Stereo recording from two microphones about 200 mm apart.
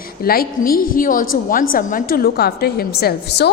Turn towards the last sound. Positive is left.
turn(degrees=55)  # may be behind; listen again after turning